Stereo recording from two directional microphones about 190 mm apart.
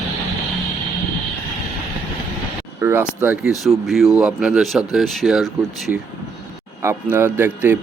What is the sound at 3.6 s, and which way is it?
Speech, centre (ahead or behind).